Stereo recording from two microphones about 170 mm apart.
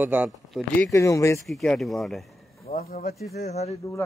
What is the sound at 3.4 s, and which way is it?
Speech, 40° left (ahead or behind).